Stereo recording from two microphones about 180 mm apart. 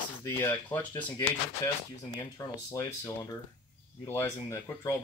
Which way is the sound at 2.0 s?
20° left (ahead or behind).